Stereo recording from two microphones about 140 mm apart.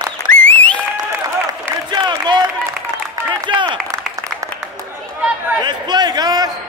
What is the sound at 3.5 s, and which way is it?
Clapping, 35° right (ahead or behind).